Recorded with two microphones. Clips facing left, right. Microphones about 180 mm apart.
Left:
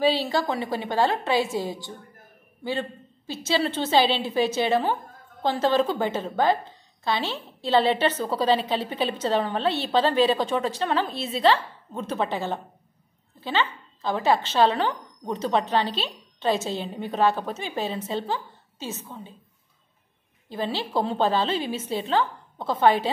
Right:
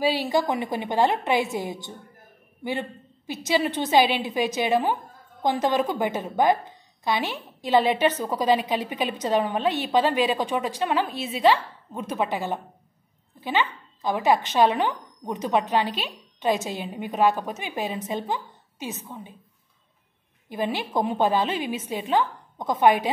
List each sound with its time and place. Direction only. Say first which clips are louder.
0.0 s a woman's voice: even; 10° right (ahead or behind)
20.4 s a woman's voice: right 1 dB; 15° right (ahead or behind)